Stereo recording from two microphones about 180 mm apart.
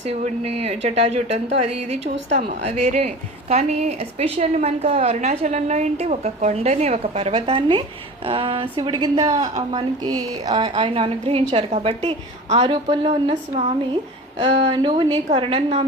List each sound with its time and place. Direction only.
0.1 s a woman's voice: 35° right (ahead or behind)